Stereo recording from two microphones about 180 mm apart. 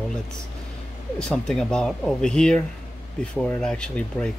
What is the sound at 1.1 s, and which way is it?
Speech, 5° left (ahead or behind).